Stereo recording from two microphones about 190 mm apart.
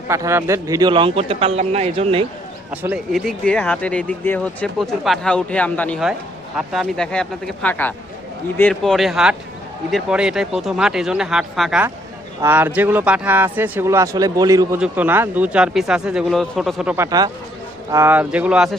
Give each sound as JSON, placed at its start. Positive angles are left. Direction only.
{"t": 0.1, "sound": "a man's voice", "side_deg": -15}
{"t": 2.8, "sound": "speech", "side_deg": -5}
{"t": 16.9, "sound": "a man's voice", "side_deg": -15}